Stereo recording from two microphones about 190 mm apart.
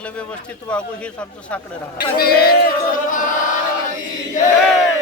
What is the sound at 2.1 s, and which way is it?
Male singing, 55° left (ahead or behind).